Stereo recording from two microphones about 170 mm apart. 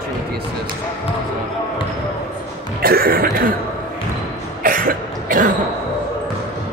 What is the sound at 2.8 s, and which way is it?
Cough, 60° right (ahead or behind).